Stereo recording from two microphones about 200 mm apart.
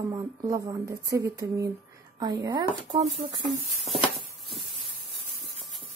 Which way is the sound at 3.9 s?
Centre (ahead or behind).